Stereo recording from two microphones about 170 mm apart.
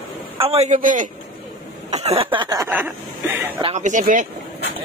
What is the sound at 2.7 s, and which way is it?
Speech, 10° right (ahead or behind).